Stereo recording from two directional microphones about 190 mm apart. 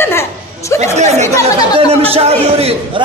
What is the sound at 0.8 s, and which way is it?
A man's voice, 35° right (ahead or behind).